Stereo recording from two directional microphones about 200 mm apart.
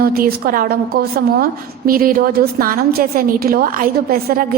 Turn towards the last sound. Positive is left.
turn(degrees=-45)  # may be behind; listen again after turning